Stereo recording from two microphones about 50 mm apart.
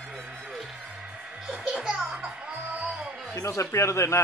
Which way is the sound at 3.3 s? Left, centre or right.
Left.